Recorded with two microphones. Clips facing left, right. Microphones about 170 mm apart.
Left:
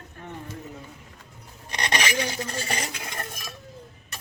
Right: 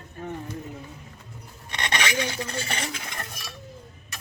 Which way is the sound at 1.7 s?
40° left (ahead or behind).